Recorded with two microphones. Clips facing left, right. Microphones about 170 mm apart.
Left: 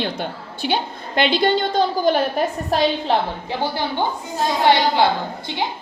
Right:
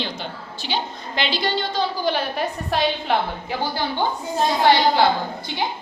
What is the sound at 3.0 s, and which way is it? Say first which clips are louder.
Speech: left 2 dB; 25° left (ahead or behind).